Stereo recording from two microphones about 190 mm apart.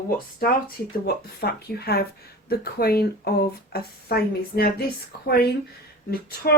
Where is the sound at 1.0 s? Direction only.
55° left (ahead or behind).